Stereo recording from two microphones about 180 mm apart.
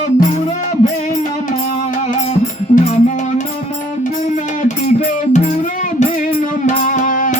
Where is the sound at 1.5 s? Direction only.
45° left (ahead or behind).